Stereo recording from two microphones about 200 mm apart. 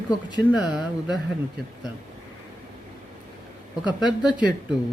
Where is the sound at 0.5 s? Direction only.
5° right (ahead or behind).